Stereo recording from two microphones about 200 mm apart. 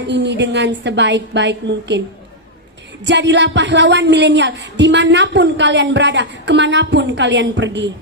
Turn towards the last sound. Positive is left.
turn(degrees=-60)  # may be behind; listen again after turning